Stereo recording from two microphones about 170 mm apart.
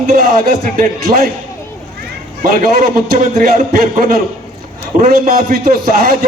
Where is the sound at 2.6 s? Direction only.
60° right (ahead or behind).